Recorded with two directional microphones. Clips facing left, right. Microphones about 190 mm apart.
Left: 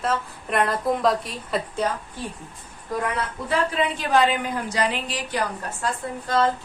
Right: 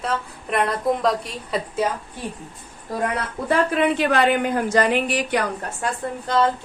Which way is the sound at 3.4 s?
60° right (ahead or behind).